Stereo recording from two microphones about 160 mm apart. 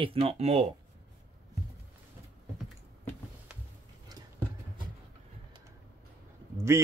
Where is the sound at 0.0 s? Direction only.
35° right (ahead or behind).